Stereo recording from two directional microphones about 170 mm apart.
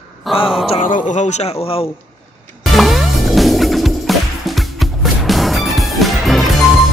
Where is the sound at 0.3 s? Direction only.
Centre (ahead or behind).